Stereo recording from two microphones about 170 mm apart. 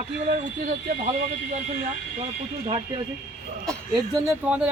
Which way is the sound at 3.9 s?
20° right (ahead or behind).